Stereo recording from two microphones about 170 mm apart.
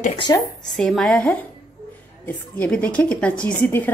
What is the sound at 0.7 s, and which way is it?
A woman's voice, centre (ahead or behind).